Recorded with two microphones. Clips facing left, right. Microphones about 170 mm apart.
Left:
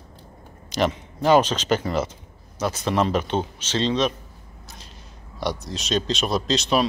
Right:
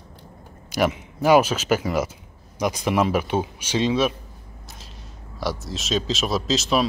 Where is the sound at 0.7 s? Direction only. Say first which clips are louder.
Right 1 dB; 10° right (ahead or behind).